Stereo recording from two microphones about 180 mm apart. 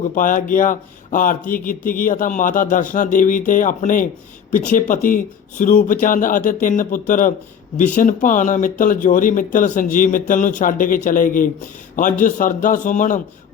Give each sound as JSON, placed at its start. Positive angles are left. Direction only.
{"t": 0.1, "sound": "speech", "side_deg": 50}